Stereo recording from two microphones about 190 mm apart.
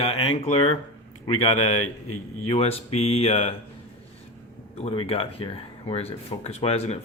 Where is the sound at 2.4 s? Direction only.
30° left (ahead or behind).